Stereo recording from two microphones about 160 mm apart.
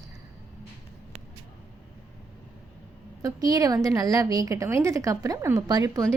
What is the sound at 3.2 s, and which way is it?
A woman's voice, 25° right (ahead or behind).